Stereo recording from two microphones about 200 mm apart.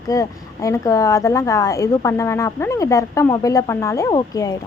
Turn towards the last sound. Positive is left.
turn(degrees=20)  # may be behind; listen again after turning